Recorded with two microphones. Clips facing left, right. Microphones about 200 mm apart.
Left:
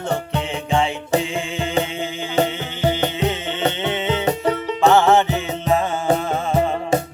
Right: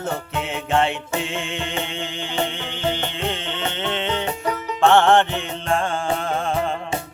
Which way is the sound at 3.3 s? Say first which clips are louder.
Left 5 dB; 5° left (ahead or behind).